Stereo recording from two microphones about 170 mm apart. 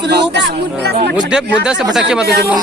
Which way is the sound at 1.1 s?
5° right (ahead or behind).